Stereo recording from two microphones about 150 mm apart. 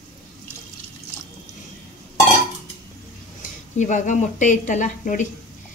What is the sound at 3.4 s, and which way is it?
A woman's voice, 55° left (ahead or behind).